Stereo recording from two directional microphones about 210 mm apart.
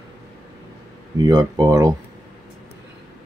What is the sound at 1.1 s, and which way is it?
Speech, 20° right (ahead or behind).